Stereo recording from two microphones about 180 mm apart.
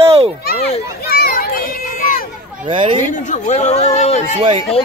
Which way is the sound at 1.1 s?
55° left (ahead or behind).